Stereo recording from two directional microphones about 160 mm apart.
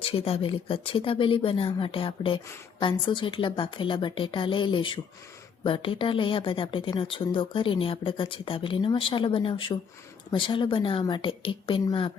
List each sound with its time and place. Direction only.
0.0 s speech: 35° left (ahead or behind)